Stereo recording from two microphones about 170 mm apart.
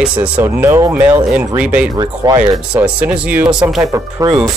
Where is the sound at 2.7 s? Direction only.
5° right (ahead or behind).